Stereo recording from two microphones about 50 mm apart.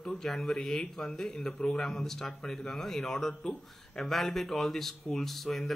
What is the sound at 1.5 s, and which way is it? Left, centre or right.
Speech, left.